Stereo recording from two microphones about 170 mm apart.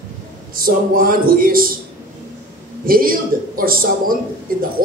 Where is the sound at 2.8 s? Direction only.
60° right (ahead or behind).